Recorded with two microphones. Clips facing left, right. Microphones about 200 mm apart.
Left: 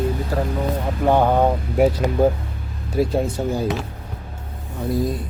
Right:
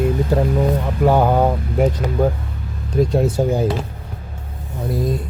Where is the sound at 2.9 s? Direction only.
5° left (ahead or behind).